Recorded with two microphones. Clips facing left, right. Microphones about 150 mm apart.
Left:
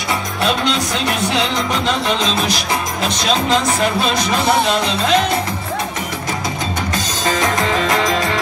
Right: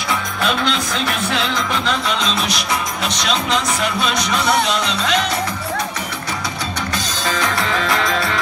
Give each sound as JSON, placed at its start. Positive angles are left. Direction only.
{"t": 2.0, "sound": "music", "side_deg": 25}
{"t": 4.0, "sound": "music", "side_deg": 25}
{"t": 6.9, "sound": "music", "side_deg": 20}